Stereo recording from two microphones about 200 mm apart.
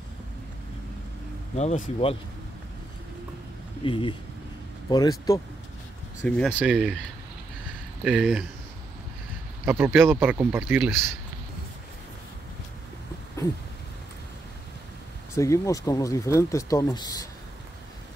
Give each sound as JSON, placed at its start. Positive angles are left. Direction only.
{"t": 1.6, "sound": "speech", "side_deg": 30}
{"t": 3.8, "sound": "speech", "side_deg": 25}
{"t": 6.2, "sound": "speech", "side_deg": 5}
{"t": 6.6, "sound": "speech", "side_deg": -5}
{"t": 8.0, "sound": "speech", "side_deg": -5}
{"t": 9.7, "sound": "speech", "side_deg": -10}
{"t": 15.3, "sound": "speech", "side_deg": 15}